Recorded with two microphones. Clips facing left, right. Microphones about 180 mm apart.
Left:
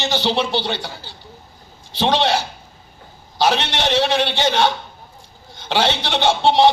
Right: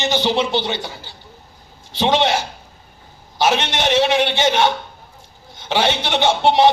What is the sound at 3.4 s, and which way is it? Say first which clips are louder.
A man's voice: even; 20° right (ahead or behind).